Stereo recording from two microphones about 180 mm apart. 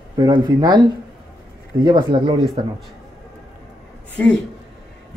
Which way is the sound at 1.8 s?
25° right (ahead or behind).